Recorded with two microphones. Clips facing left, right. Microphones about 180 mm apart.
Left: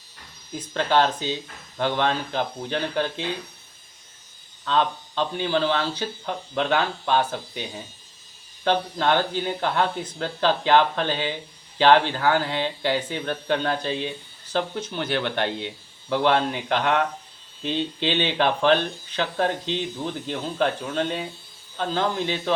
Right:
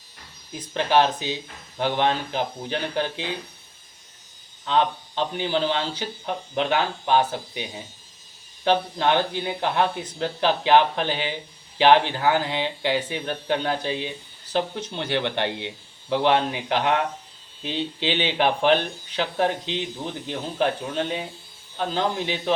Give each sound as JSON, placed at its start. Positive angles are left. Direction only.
{"t": 0.7, "sound": "speech", "side_deg": -15}
{"t": 4.6, "sound": "speech", "side_deg": -15}
{"t": 8.6, "sound": "speech", "side_deg": -15}